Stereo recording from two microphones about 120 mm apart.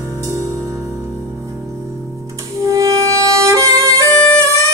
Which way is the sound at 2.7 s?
30° right (ahead or behind).